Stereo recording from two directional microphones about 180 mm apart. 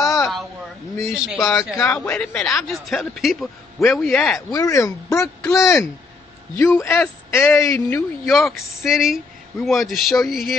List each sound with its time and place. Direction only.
0.0 s a sound: 15° left (ahead or behind)
1.1 s a man's voice: 5° right (ahead or behind)
1.7 s a man's voice: 5° left (ahead or behind)
4.5 s a man's voice: 20° left (ahead or behind)
8.3 s a man's voice: centre (ahead or behind)